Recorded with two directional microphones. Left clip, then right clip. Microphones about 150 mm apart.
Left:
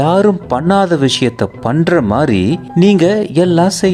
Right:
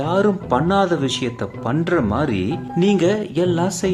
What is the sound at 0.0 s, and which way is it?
A man's voice, 45° left (ahead or behind).